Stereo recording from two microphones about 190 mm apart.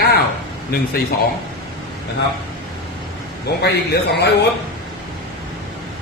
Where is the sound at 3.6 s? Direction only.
60° left (ahead or behind).